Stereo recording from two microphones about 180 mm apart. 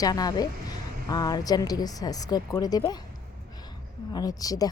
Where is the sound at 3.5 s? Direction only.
20° left (ahead or behind).